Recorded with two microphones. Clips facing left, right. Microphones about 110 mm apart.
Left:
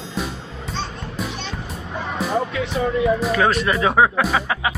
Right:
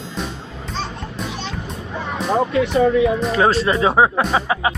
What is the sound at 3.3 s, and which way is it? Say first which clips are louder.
Speech: right 2 dB; 30° right (ahead or behind).